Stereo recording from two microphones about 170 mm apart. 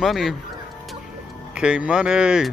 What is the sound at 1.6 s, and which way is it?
Speech, 5° right (ahead or behind).